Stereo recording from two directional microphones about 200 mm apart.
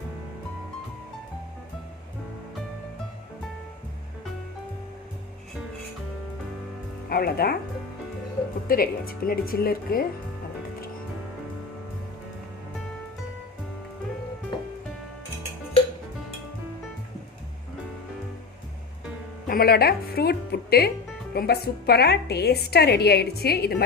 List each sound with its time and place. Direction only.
7.1 s a woman's voice: 50° left (ahead or behind)
8.6 s a woman's voice: 45° left (ahead or behind)
19.5 s a woman's voice: 50° left (ahead or behind)